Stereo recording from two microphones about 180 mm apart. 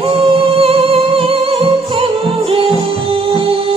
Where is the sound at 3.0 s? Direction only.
30° right (ahead or behind).